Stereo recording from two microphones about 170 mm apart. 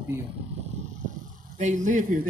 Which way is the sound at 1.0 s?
50° right (ahead or behind).